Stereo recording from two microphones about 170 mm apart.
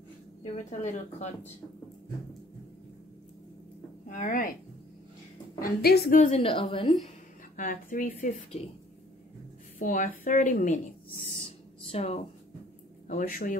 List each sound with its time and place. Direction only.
0.4 s speech: 45° left (ahead or behind)
4.1 s speech: 50° left (ahead or behind)
5.6 s a woman's voice: 65° left (ahead or behind)
6.3 s a woman's voice: 30° left (ahead or behind)
7.5 s speech: 50° left (ahead or behind)
9.8 s speech: 55° left (ahead or behind)
11.4 s a sound: 35° left (ahead or behind)
13.1 s a woman's voice: 55° left (ahead or behind)